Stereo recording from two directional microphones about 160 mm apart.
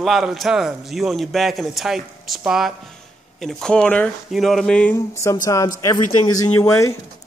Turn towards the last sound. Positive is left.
turn(degrees=20)  # may be behind; listen again after turning